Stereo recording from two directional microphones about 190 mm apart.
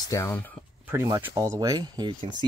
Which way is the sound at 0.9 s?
15° right (ahead or behind).